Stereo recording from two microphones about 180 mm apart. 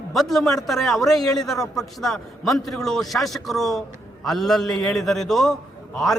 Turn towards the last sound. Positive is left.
turn(degrees=0)  # may be behind; listen again after turning